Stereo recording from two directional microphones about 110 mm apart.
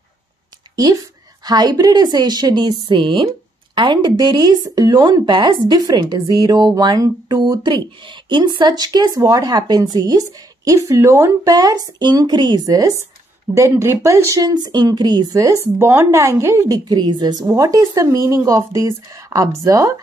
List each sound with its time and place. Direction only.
0.7 s a sound: 40° right (ahead or behind)
1.4 s a woman's voice: 35° right (ahead or behind)
11.5 s speech: 35° right (ahead or behind)
15.3 s a woman's voice: 25° right (ahead or behind)